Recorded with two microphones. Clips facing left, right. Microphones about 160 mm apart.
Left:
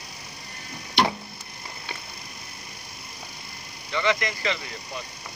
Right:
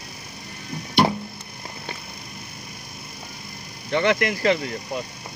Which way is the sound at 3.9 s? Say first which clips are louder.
Right 5 dB; 60° right (ahead or behind).